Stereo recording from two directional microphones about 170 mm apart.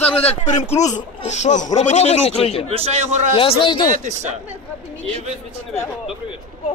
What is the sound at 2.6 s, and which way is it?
Speech, 35° right (ahead or behind).